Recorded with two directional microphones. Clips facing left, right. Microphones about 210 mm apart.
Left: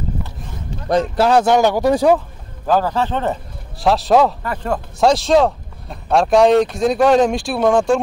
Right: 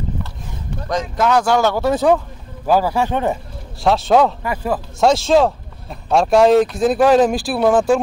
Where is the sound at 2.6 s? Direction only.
10° right (ahead or behind).